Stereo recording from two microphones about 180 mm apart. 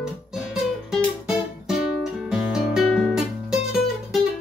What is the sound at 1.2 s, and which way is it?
Guitar, 5° right (ahead or behind).